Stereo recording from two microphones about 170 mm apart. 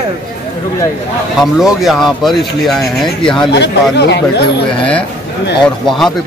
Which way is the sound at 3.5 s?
80° left.